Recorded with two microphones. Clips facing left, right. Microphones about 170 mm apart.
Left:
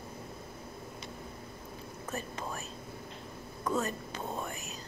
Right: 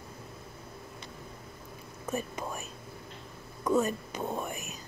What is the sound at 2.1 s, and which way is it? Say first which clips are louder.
Whispering: right 4 dB; 15° right (ahead or behind).